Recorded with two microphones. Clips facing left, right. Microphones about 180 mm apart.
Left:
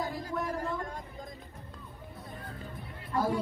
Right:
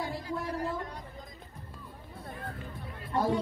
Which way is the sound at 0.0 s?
45° left (ahead or behind).